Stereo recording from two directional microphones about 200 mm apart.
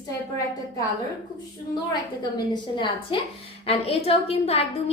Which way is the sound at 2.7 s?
25° left (ahead or behind).